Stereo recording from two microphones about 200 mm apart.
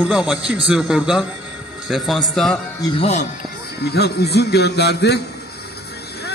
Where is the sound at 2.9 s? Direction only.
30° left (ahead or behind).